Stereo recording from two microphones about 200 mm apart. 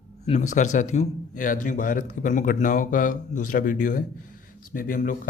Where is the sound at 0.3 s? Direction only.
35° left (ahead or behind).